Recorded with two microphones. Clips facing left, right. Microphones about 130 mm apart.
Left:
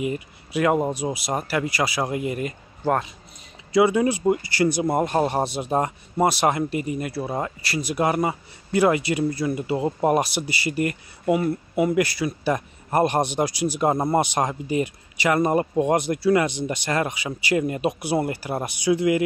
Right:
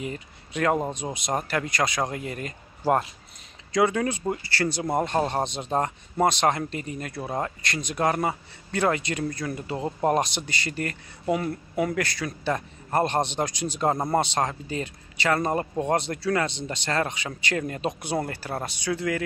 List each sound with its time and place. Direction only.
0.0 s speech: 10° left (ahead or behind)
2.8 s a man's voice: 40° right (ahead or behind)
3.7 s speech: 10° left (ahead or behind)